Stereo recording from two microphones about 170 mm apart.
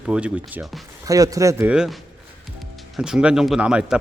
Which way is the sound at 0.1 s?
5° right (ahead or behind).